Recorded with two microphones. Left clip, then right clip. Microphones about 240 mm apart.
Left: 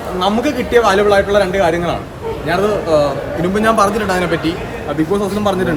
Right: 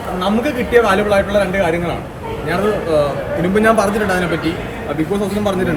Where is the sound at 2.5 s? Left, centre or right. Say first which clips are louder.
Left 2 dB; left.